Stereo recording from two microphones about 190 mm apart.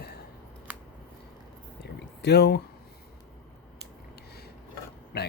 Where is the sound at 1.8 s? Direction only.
60° left (ahead or behind).